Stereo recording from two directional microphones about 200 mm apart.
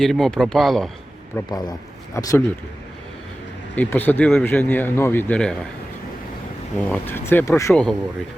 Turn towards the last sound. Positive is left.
turn(degrees=5)  # may be behind; listen again after turning